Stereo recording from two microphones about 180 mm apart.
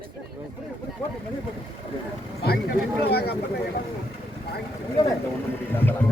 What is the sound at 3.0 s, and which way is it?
Speech, 65° left (ahead or behind).